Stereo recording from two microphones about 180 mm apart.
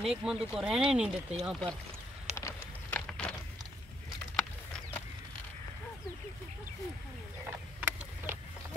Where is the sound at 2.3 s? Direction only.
10° left (ahead or behind).